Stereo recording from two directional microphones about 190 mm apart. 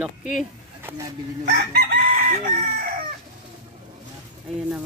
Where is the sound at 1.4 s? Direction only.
60° right (ahead or behind); by 2.9 s 45° right (ahead or behind).